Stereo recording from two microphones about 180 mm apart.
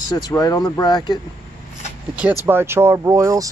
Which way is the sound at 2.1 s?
10° right (ahead or behind).